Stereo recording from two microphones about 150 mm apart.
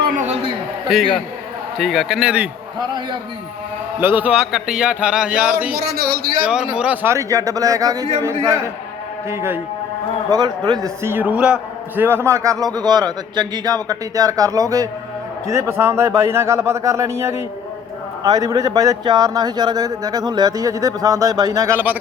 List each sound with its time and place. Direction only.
0.9 s a man's voice: centre (ahead or behind)
2.7 s a man's voice: 30° right (ahead or behind)
4.0 s a man's voice: 10° right (ahead or behind)
9.3 s a man's voice: 15° right (ahead or behind)
10.8 s a man's voice: 15° right (ahead or behind)